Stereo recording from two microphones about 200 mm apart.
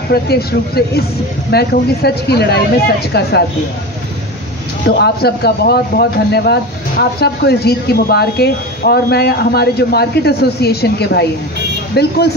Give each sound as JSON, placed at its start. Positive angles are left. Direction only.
{"t": 0.1, "sound": "speech", "side_deg": 50}
{"t": 4.8, "sound": "speech", "side_deg": 55}